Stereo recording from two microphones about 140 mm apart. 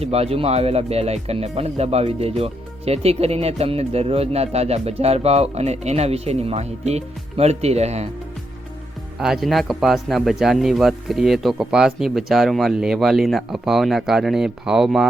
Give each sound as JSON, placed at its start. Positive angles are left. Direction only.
{"t": 0.0, "sound": "speech", "side_deg": -45}
{"t": 9.1, "sound": "speech", "side_deg": -5}